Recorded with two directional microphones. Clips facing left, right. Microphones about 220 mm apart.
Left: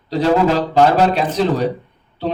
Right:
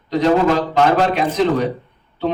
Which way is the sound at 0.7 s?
35° left (ahead or behind).